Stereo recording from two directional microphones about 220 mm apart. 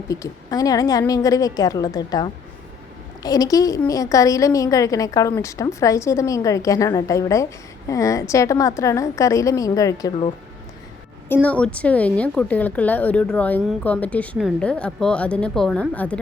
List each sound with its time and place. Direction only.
0.1 s a woman's voice: 15° left (ahead or behind)
11.4 s a woman's voice: 5° left (ahead or behind)